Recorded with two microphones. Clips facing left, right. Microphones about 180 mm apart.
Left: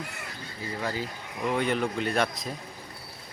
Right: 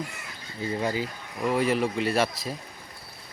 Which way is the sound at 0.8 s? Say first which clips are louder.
Right 3 dB; 15° right (ahead or behind).